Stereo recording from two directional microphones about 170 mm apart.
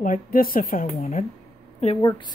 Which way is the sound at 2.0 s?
25° left (ahead or behind).